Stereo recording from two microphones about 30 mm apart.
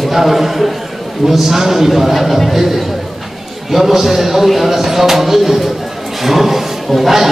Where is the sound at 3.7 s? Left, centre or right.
Centre.